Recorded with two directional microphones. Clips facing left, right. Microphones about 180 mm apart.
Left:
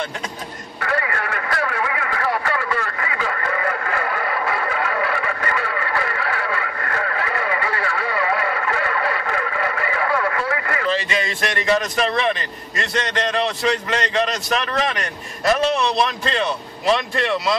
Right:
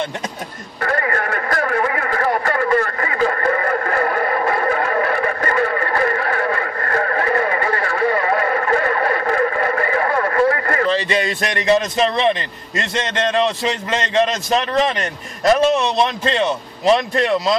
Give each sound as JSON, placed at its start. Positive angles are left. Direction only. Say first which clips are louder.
{"t": 0.7, "sound": "a sound", "louder": "right 4 dB", "side_deg": -40}
{"t": 11.6, "sound": "a man's voice", "louder": "right 4 dB", "side_deg": -25}
{"t": 16.8, "sound": "speech", "louder": "right 4 dB", "side_deg": -40}